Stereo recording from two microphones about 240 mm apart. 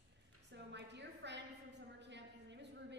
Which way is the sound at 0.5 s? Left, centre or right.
Right.